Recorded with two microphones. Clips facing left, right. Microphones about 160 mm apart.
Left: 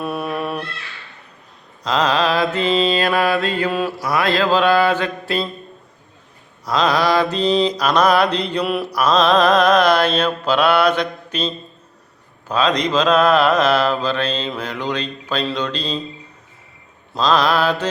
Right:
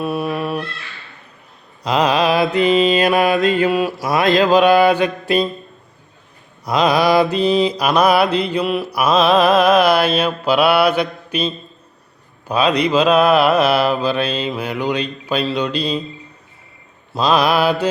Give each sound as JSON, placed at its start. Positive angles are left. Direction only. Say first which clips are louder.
{"t": 0.0, "sound": "music", "louder": "right 2 dB", "side_deg": 0}
{"t": 1.8, "sound": "mantra", "louder": "right 2 dB", "side_deg": -10}
{"t": 6.7, "sound": "mantra", "louder": "right 2 dB", "side_deg": -15}
{"t": 17.2, "sound": "mantra", "louder": "right 1 dB", "side_deg": -10}